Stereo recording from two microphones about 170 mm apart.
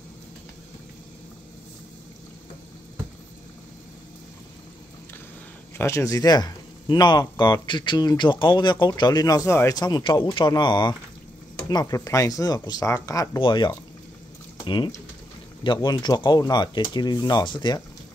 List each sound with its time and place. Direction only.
5.8 s speech: 15° left (ahead or behind)